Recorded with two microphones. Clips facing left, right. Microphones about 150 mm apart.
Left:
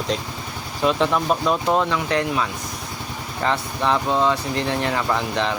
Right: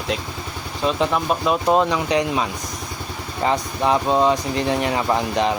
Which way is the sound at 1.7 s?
20° right (ahead or behind).